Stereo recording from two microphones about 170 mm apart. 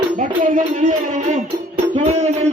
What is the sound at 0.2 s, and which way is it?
Speech, 50° right (ahead or behind).